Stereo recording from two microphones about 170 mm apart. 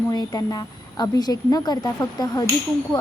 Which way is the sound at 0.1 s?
20° left (ahead or behind).